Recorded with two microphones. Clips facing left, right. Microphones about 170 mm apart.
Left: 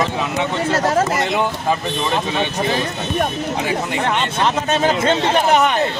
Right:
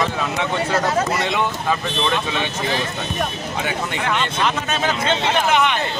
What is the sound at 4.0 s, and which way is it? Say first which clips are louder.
A man's voice: left 1 dB; 30° left (ahead or behind).